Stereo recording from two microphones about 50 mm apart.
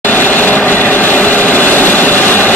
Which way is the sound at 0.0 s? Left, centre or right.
Left.